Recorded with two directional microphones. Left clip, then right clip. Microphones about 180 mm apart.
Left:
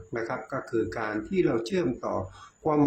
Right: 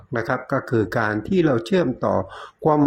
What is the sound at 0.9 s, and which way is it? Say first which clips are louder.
Speech: right 9 dB; 30° right (ahead or behind).